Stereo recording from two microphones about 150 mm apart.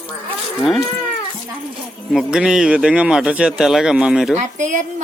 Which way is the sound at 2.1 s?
5° right (ahead or behind).